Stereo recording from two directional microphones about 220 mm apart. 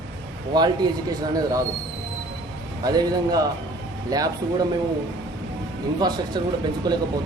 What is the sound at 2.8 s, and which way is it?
Speech, 15° right (ahead or behind).